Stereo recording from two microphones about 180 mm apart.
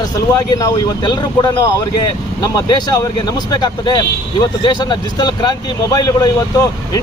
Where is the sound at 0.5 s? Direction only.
20° left (ahead or behind).